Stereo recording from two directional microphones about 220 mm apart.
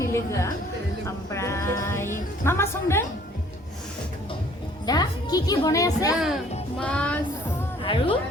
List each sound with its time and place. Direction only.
0.0 s music: 15° left (ahead or behind)
4.9 s a woman's voice: 15° left (ahead or behind)
6.7 s music: 5° left (ahead or behind)
7.9 s speech: 25° left (ahead or behind)